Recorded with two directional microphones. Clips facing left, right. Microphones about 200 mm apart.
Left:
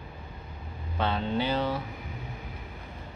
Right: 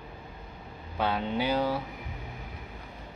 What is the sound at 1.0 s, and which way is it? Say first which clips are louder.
Speech: even; 10° right (ahead or behind).